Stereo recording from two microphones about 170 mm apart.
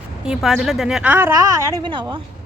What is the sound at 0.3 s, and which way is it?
Speech, centre (ahead or behind).